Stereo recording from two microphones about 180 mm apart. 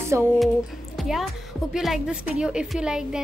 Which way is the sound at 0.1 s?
15° right (ahead or behind).